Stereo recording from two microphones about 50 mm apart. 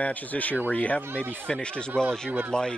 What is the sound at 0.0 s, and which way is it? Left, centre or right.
Speech, left.